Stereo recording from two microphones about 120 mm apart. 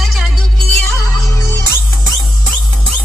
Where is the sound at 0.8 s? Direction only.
25° left (ahead or behind).